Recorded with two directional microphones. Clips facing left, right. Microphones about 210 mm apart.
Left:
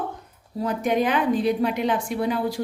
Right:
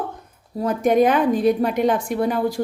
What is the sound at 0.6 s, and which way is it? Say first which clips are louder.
A woman's voice: right 6 dB; 45° right (ahead or behind).